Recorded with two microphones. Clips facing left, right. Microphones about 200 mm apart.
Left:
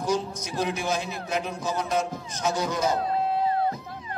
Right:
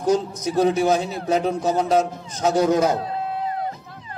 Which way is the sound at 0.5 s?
40° right (ahead or behind).